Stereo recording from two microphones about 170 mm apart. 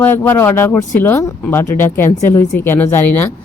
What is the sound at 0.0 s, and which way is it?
A woman's voice, 15° left (ahead or behind).